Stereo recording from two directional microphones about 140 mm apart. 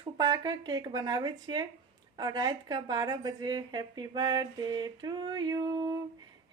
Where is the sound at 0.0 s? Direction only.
30° right (ahead or behind).